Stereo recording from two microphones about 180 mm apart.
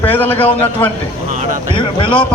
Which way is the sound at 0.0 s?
10° left (ahead or behind).